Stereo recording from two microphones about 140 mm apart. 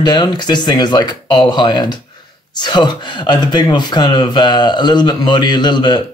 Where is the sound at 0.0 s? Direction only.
30° left (ahead or behind).